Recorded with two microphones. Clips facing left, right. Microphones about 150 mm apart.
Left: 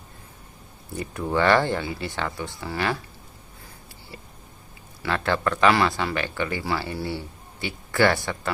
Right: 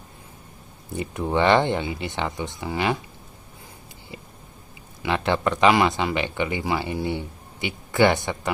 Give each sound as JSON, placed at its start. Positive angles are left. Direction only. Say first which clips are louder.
{"t": 0.9, "sound": "speech", "louder": "right 1 dB", "side_deg": -20}
{"t": 5.0, "sound": "speech", "louder": "right 2 dB", "side_deg": -20}